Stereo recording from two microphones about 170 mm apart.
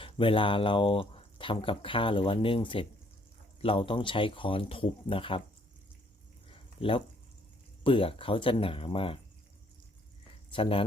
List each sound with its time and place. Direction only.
0.0 s speech: 30° left (ahead or behind)
6.5 s a sound: 30° left (ahead or behind)
7.9 s speech: 30° left (ahead or behind)
10.5 s speech: 30° left (ahead or behind)